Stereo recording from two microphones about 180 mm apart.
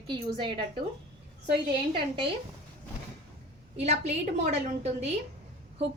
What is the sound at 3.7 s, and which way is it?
Speech, 40° right (ahead or behind).